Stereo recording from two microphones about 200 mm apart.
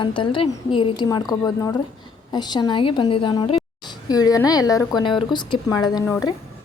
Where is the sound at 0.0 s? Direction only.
25° left (ahead or behind).